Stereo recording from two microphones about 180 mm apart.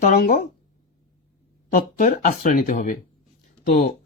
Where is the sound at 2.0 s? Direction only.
55° left (ahead or behind).